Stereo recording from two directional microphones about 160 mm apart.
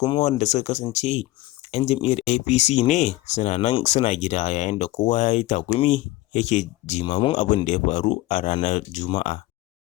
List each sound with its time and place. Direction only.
0.2 s speech: 45° left (ahead or behind)
7.0 s speech: 30° left (ahead or behind)
7.3 s speech: 50° left (ahead or behind)